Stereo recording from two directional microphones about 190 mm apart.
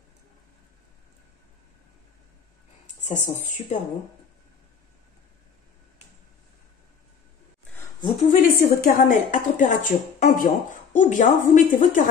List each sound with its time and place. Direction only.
3.1 s speech: 35° left (ahead or behind)
8.3 s speech: 50° left (ahead or behind)